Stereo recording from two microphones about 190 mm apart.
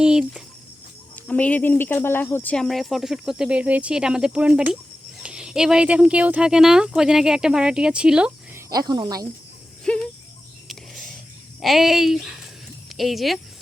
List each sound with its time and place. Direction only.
0.0 s speech: 5° right (ahead or behind)
1.1 s speech: 10° left (ahead or behind)
8.7 s speech: 20° right (ahead or behind)
9.8 s a sound: 5° left (ahead or behind)
11.6 s speech: centre (ahead or behind)